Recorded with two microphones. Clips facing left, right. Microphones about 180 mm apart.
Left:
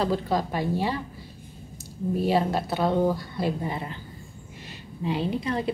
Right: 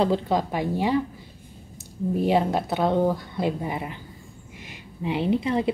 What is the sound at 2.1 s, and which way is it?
A woman's voice, 20° right (ahead or behind).